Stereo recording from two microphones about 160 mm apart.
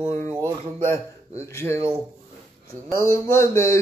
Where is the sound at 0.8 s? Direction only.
15° left (ahead or behind).